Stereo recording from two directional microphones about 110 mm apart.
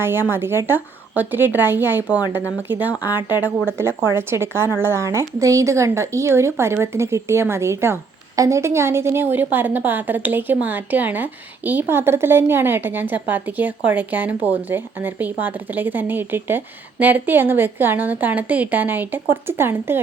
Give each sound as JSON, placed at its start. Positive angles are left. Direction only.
{"t": 0.0, "sound": "a woman's voice", "side_deg": -20}